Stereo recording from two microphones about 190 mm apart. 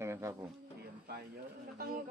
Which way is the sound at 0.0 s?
15° right (ahead or behind).